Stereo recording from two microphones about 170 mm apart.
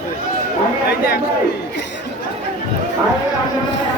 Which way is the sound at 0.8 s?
65° left (ahead or behind).